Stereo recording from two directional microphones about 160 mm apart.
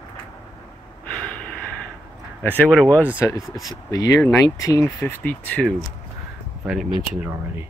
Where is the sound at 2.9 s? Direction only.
10° right (ahead or behind).